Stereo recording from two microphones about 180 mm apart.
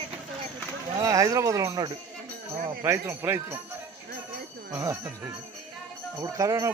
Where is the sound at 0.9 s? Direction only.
20° right (ahead or behind).